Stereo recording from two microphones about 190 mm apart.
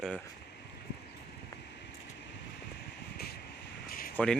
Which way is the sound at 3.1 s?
55° left (ahead or behind).